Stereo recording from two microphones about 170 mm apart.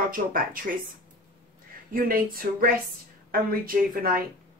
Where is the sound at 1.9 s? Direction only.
60° right (ahead or behind).